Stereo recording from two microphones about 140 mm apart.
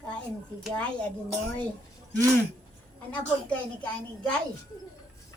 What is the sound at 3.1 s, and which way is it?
A woman's voice, 10° left (ahead or behind).